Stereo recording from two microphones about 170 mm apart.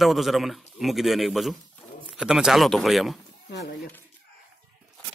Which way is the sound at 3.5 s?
75° left (ahead or behind).